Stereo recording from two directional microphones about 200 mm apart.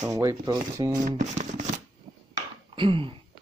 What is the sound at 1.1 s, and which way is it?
Speech, 35° right (ahead or behind).